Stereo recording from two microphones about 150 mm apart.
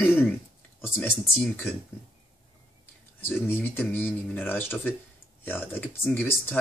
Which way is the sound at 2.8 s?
15° left (ahead or behind).